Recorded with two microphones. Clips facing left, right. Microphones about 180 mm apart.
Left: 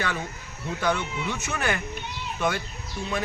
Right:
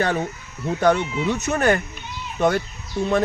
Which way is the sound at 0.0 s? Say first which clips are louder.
Right 8 dB; 40° right (ahead or behind).